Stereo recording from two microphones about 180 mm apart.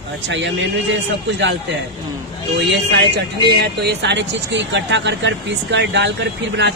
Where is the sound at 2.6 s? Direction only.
75° right (ahead or behind).